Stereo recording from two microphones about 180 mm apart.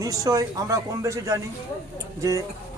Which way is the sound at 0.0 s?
20° right (ahead or behind).